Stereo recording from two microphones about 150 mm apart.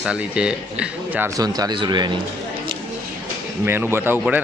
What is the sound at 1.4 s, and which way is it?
Speech, 25° right (ahead or behind).